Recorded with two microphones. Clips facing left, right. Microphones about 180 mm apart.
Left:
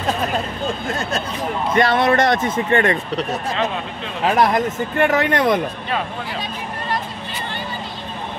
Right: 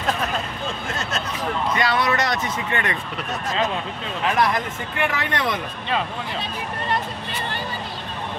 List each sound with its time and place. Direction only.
0.8 s speech: 40° left (ahead or behind)
1.7 s speech: 50° left (ahead or behind)
4.4 s speech: 45° left (ahead or behind)